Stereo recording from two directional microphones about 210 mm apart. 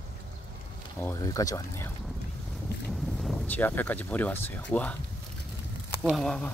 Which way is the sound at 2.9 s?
Centre (ahead or behind).